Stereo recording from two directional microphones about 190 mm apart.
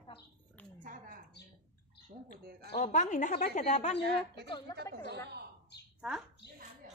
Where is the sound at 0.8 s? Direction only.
45° right (ahead or behind).